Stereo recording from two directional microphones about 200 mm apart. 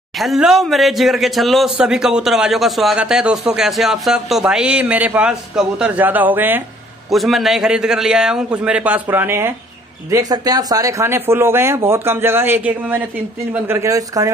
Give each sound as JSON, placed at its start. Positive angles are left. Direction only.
{"t": 0.2, "sound": "speech", "side_deg": 0}